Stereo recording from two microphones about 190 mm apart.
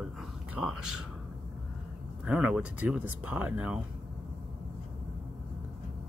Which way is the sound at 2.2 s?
5° right (ahead or behind).